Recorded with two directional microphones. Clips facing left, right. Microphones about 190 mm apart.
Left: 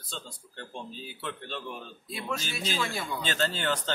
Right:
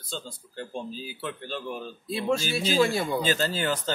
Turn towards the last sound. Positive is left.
turn(degrees=-5)  # may be behind; listen again after turning